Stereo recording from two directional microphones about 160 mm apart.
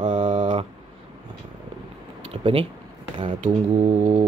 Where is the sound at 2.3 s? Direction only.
35° right (ahead or behind).